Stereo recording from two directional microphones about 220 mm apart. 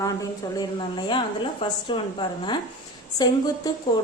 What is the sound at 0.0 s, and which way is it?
A woman's voice, 15° left (ahead or behind).